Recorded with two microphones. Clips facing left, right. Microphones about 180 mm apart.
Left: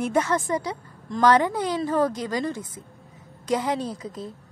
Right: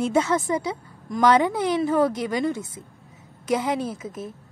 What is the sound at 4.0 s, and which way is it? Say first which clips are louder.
Speech: right 1 dB; 20° right (ahead or behind).